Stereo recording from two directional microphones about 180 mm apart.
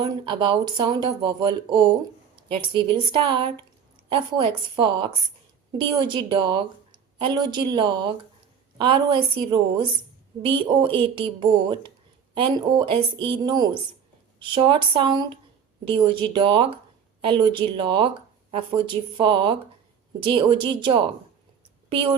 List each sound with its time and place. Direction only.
0.0 s speech: 25° right (ahead or behind)